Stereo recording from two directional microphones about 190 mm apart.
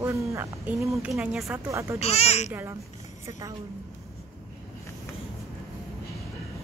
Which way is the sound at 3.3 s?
20° right (ahead or behind).